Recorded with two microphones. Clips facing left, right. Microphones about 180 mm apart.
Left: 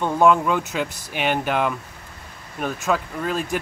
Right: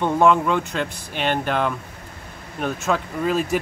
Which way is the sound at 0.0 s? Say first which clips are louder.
Even; 5° left (ahead or behind).